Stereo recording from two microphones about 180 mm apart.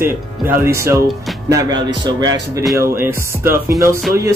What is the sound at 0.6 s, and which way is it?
Speech, 15° right (ahead or behind).